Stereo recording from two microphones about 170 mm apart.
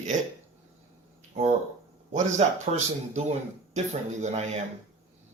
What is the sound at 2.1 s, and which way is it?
Speech, 45° right (ahead or behind).